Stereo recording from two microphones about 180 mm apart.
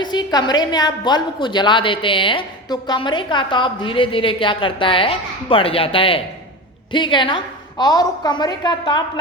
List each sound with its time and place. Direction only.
0.0 s a woman's voice: 25° left (ahead or behind)